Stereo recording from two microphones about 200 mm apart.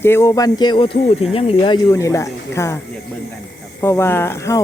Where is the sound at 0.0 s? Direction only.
15° left (ahead or behind).